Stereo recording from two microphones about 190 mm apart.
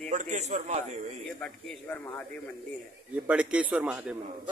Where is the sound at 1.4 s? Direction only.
5° left (ahead or behind).